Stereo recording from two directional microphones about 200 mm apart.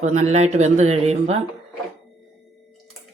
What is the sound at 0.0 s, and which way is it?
Speech, 35° right (ahead or behind).